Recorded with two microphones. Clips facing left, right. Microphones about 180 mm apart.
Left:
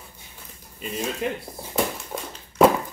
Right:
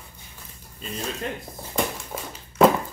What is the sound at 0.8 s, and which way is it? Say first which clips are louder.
Speech: left 4 dB; 10° left (ahead or behind).